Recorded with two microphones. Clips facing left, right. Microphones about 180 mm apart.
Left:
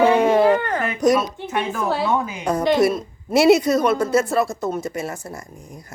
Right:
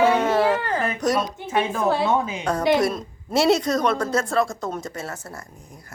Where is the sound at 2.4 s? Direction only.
10° left (ahead or behind).